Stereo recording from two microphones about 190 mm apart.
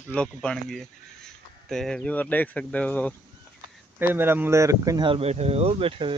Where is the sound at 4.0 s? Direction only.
10° right (ahead or behind); by 6.1 s 30° right (ahead or behind).